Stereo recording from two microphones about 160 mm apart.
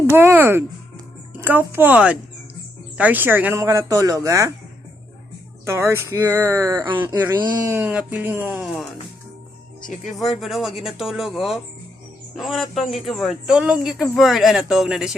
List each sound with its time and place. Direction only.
0.1 s speech: 15° right (ahead or behind)
5.6 s speech: 15° right (ahead or behind)
7.0 s speech: 10° right (ahead or behind)
7.8 s speech: 5° right (ahead or behind)
8.6 s speech: centre (ahead or behind)
9.8 s speech: 50° left (ahead or behind)
10.1 s speech: centre (ahead or behind)